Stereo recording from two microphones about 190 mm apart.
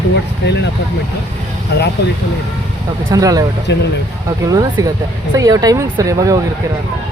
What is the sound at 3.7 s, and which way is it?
Speech, 65° left (ahead or behind).